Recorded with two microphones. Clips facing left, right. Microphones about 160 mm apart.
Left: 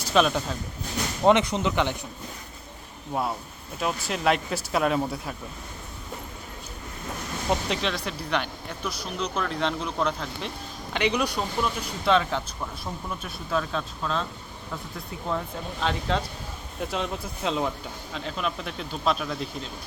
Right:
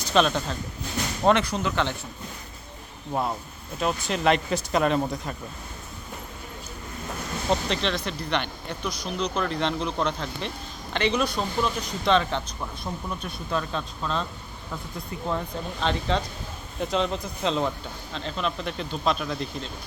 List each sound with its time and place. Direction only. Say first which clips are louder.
0.1 s speech: even; 5° left (ahead or behind)
1.2 s speech: left 2 dB; 20° left (ahead or behind)
3.1 s speech: right 1 dB; centre (ahead or behind)
7.5 s speech: right 1 dB; 5° left (ahead or behind)